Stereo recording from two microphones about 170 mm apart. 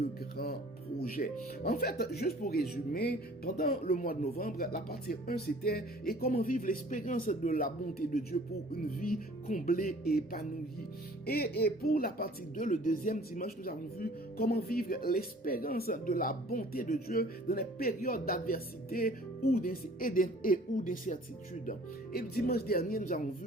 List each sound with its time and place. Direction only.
0.0 s speech: 65° left (ahead or behind)
21.7 s speech: 65° left (ahead or behind)